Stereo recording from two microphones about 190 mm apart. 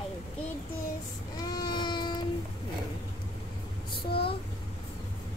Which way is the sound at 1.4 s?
25° left (ahead or behind).